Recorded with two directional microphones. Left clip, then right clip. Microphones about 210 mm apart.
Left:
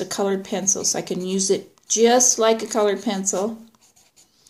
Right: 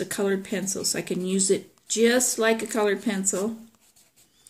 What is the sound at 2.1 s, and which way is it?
Speech, 60° right (ahead or behind).